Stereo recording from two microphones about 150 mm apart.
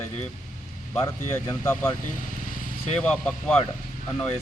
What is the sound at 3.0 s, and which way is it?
Speech, 10° left (ahead or behind).